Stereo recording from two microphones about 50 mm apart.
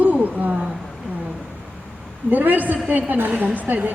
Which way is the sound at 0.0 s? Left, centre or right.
Right.